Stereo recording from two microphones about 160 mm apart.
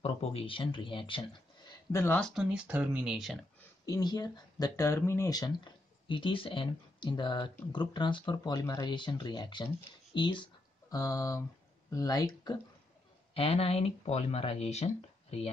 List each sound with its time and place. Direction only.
0.0 s speech: 40° left (ahead or behind)
1.7 s a sound: 20° left (ahead or behind)
2.1 s speech: 5° left (ahead or behind)
2.5 s speech: 10° right (ahead or behind)
3.8 s speech: 25° left (ahead or behind)
13.3 s speech: 35° left (ahead or behind)